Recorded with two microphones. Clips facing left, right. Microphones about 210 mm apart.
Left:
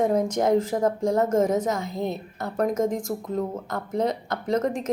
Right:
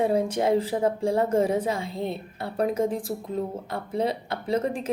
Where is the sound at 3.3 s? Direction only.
45° left (ahead or behind).